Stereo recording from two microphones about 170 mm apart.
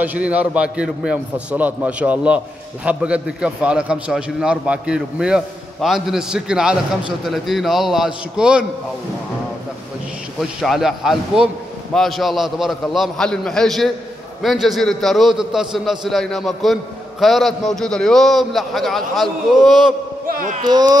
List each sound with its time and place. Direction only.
0.0 s a man's voice: 10° right (ahead or behind)
10.6 s a man's voice: centre (ahead or behind)
20.2 s a child's voice: 55° right (ahead or behind)
20.6 s speech: 25° right (ahead or behind)